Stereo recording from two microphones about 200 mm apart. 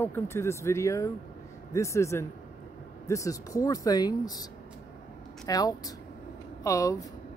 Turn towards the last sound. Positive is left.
turn(degrees=15)  # may be behind; listen again after turning